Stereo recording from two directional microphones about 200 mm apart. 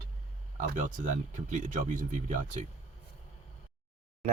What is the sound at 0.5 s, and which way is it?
Speech, 40° right (ahead or behind).